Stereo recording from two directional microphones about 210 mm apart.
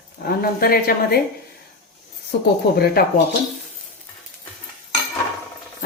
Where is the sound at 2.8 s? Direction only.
45° left (ahead or behind).